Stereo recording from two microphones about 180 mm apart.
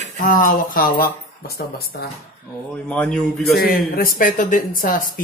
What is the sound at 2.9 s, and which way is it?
Speech, 5° left (ahead or behind).